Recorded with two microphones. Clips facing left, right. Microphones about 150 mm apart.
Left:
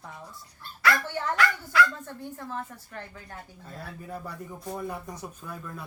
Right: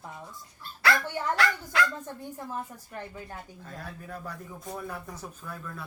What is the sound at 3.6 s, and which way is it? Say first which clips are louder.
Speech: left 3 dB; 10° left (ahead or behind).